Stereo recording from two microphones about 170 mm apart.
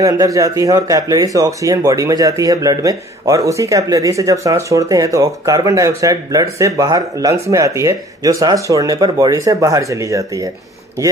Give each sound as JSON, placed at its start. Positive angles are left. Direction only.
{"t": 0.0, "sound": "speech", "side_deg": -20}